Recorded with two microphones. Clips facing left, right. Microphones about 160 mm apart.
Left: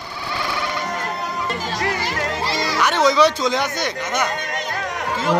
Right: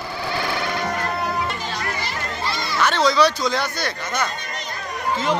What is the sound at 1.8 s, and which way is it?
Music, 90° left.